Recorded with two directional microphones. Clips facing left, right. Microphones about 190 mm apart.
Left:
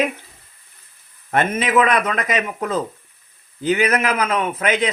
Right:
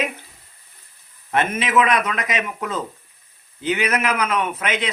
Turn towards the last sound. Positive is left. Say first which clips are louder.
# left 4 dB
turn(degrees=40)  # may be behind; listen again after turning